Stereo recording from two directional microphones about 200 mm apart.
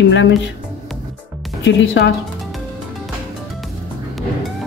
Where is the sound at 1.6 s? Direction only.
65° left (ahead or behind).